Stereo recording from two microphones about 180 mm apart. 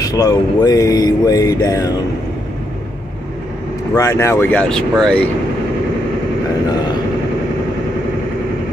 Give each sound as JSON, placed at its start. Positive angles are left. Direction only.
{"t": 0.0, "sound": "speech", "side_deg": 20}
{"t": 3.9, "sound": "speech", "side_deg": 15}